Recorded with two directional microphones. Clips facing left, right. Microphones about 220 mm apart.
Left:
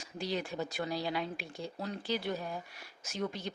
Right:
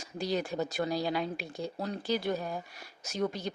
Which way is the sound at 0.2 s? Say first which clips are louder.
Right 4 dB; 40° right (ahead or behind).